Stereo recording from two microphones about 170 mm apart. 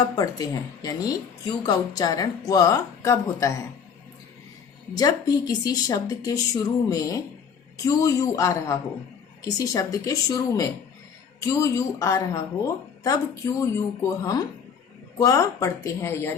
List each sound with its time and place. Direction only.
0.0 s speech: 20° left (ahead or behind)
4.9 s speech: 20° left (ahead or behind)
15.2 s speech: 20° left (ahead or behind)